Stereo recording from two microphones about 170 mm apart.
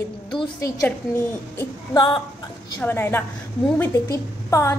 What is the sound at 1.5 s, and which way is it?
Female singing, 25° left (ahead or behind).